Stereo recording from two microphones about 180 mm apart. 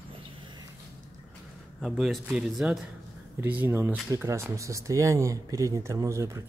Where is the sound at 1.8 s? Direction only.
Centre (ahead or behind).